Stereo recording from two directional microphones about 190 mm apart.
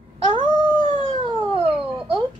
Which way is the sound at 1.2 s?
30° right (ahead or behind).